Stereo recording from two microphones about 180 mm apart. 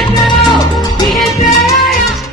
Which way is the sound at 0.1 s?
25° left (ahead or behind).